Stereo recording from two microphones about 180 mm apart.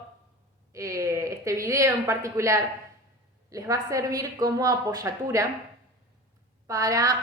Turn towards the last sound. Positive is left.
turn(degrees=-20)  # may be behind; listen again after turning